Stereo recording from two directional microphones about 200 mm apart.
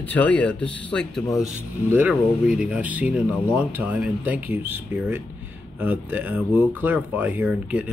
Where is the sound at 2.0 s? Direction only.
5° right (ahead or behind).